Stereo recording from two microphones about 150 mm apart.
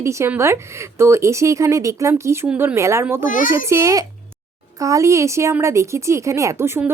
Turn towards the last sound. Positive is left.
turn(degrees=-15)  # may be behind; listen again after turning